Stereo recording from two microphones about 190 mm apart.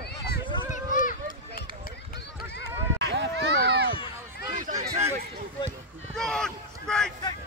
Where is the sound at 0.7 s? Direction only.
45° left (ahead or behind).